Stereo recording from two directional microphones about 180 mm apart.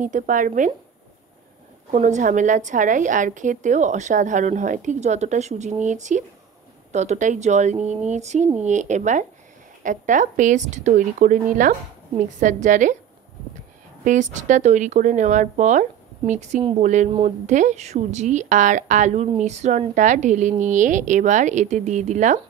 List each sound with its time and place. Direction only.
0.0 s a woman's voice: 45° right (ahead or behind)
1.9 s a woman's voice: 40° right (ahead or behind)
14.0 s a woman's voice: 45° right (ahead or behind)